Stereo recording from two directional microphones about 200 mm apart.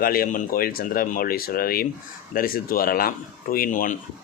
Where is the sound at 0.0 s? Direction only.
45° left (ahead or behind).